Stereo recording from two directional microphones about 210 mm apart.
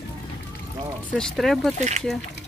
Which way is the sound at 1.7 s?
35° right (ahead or behind).